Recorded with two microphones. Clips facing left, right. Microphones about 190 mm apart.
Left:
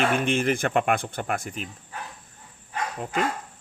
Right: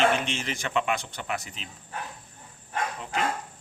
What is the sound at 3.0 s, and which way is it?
Speech, 50° left (ahead or behind).